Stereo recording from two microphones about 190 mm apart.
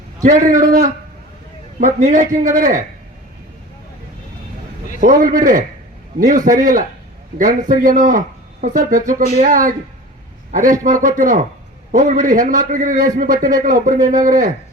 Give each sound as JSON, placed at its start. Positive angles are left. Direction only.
{"t": 0.2, "sound": "a man's voice", "side_deg": -40}
{"t": 4.9, "sound": "a man's voice", "side_deg": -45}